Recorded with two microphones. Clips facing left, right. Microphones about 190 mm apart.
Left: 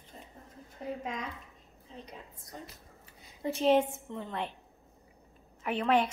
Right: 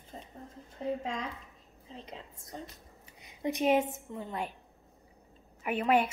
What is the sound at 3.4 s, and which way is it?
A woman's voice, 15° right (ahead or behind).